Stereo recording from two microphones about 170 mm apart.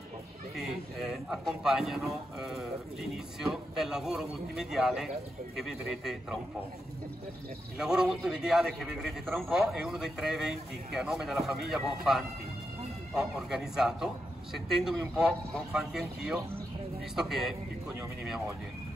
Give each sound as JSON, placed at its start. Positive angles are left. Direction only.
{"t": 0.6, "sound": "speech", "side_deg": 0}
{"t": 7.7, "sound": "speech", "side_deg": -5}